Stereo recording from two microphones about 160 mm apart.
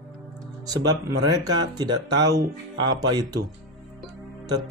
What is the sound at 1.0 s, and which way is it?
Speech, 25° right (ahead or behind).